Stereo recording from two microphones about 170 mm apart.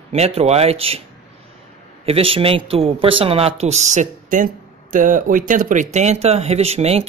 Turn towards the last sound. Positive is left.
turn(degrees=-35)  # may be behind; listen again after turning